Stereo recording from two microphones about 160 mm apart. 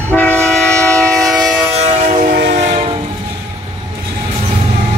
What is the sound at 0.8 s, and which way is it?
Train, 20° right (ahead or behind).